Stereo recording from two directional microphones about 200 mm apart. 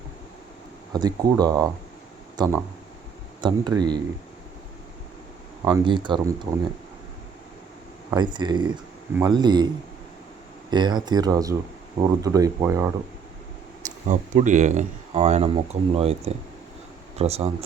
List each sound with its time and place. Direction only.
0.9 s speech: 20° right (ahead or behind)
5.7 s speech: 25° right (ahead or behind)
8.1 s speech: 20° right (ahead or behind)
10.7 s speech: 20° right (ahead or behind)
14.1 s speech: 40° right (ahead or behind)